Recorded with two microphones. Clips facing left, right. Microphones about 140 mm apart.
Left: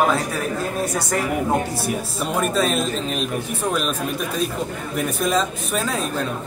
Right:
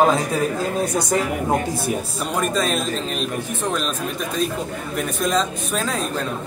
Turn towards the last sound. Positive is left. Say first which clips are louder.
# even
turn(degrees=0)  # may be behind; listen again after turning